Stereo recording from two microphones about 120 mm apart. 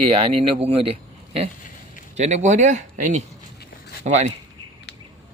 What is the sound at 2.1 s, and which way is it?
Speech, 70° right (ahead or behind).